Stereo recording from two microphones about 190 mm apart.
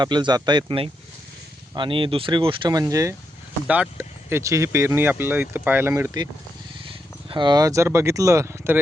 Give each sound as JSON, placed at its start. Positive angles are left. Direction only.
{"t": 0.0, "sound": "speech", "side_deg": -25}
{"t": 6.8, "sound": "speech", "side_deg": -25}